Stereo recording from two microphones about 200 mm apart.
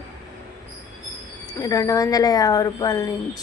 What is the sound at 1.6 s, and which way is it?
A woman's voice, 15° left (ahead or behind).